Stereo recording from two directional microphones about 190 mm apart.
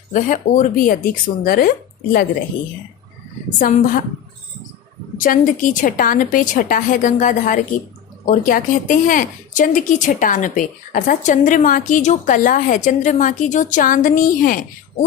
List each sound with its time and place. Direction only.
0.1 s a woman's voice: 45° left (ahead or behind)
3.6 s a woman's voice: 45° left (ahead or behind)
5.1 s a woman's voice: 45° left (ahead or behind)